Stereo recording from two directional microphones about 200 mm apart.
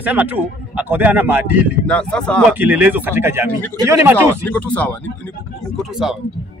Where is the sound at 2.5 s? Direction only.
10° right (ahead or behind).